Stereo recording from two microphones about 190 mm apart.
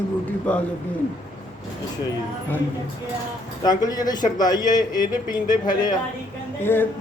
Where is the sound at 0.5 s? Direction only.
5° left (ahead or behind).